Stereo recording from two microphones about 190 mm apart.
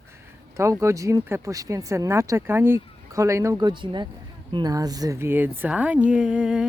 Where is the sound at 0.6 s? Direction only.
15° right (ahead or behind).